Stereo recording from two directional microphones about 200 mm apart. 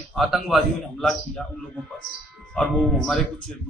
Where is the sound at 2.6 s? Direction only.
5° left (ahead or behind).